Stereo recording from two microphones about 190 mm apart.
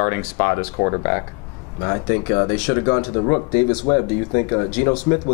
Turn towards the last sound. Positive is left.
turn(degrees=20)  # may be behind; listen again after turning